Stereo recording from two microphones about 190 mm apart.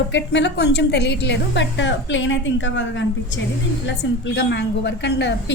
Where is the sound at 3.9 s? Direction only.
65° left (ahead or behind).